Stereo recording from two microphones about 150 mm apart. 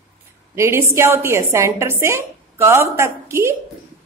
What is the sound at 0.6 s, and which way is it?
A woman's voice, 20° right (ahead or behind).